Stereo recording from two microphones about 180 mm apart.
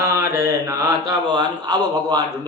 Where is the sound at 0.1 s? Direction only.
15° right (ahead or behind).